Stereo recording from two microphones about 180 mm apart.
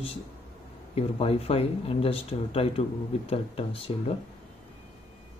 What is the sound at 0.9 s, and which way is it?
Speech, 35° left (ahead or behind).